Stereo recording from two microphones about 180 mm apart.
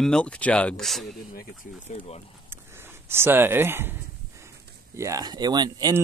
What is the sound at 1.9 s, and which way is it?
Speech, 35° left (ahead or behind).